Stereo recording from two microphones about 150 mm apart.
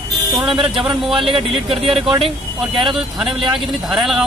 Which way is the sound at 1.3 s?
40° right (ahead or behind).